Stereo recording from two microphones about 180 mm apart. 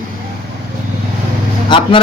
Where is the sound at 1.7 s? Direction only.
25° left (ahead or behind).